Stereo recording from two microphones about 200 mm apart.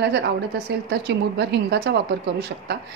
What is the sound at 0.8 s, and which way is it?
A woman's voice, 55° right (ahead or behind).